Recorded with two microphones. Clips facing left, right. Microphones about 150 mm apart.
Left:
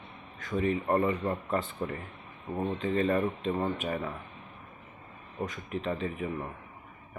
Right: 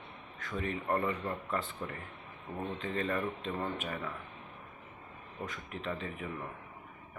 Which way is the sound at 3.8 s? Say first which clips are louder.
Left 6 dB; 30° left (ahead or behind).